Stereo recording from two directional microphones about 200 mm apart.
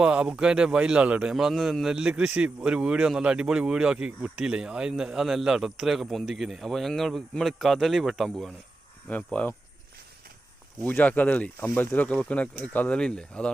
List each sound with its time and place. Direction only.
0.0 s a man's voice: 5° right (ahead or behind)
10.8 s speech: 10° left (ahead or behind)